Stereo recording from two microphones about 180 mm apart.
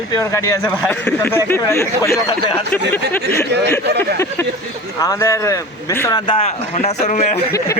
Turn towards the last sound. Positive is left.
turn(degrees=40)  # may be behind; listen again after turning